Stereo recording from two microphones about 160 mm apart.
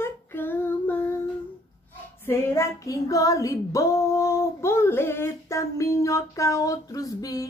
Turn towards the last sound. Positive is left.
turn(degrees=20)  # may be behind; listen again after turning